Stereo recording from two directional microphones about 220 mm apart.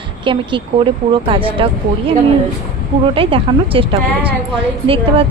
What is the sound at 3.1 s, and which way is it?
A woman's voice, 25° right (ahead or behind).